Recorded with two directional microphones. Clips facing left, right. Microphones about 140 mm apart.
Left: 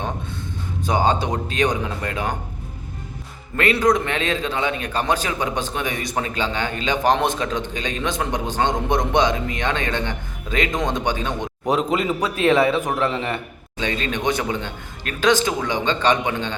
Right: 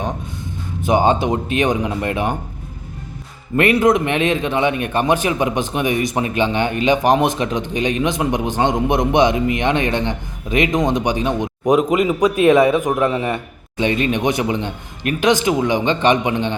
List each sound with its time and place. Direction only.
0.9 s a man's voice: 20° right (ahead or behind)
3.6 s a man's voice: 20° right (ahead or behind)